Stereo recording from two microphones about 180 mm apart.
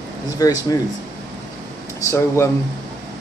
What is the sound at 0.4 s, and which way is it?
Speech, 20° left (ahead or behind).